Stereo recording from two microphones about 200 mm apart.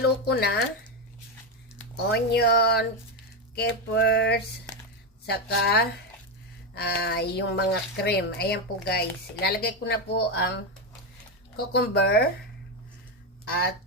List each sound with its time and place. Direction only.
0.0 s a woman's voice: 50° left (ahead or behind)
2.0 s a woman's voice: 55° left (ahead or behind)